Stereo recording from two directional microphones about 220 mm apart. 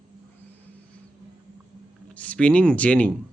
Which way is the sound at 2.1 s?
5° left (ahead or behind).